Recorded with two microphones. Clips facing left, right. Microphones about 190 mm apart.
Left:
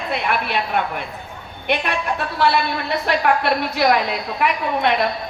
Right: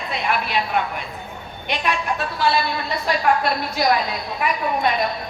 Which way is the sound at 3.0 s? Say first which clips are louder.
Left 1 dB; 65° left (ahead or behind).